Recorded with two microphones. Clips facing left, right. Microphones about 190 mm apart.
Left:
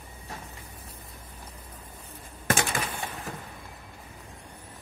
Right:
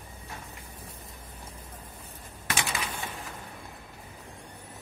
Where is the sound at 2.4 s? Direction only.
50° left (ahead or behind).